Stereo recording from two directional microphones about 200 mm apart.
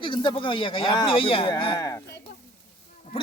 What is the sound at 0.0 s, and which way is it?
Speech, 25° left (ahead or behind).